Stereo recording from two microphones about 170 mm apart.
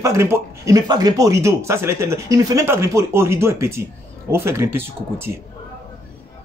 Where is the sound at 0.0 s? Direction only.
15° right (ahead or behind).